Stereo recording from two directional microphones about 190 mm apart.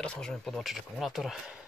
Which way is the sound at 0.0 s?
Centre (ahead or behind).